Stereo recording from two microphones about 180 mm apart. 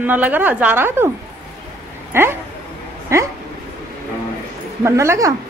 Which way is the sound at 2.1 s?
15° right (ahead or behind).